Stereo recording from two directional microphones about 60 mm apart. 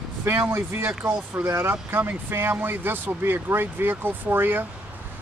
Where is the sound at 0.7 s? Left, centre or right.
Right.